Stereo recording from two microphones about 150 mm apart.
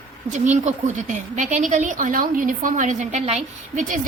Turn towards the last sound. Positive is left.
turn(degrees=-50)  # may be behind; listen again after turning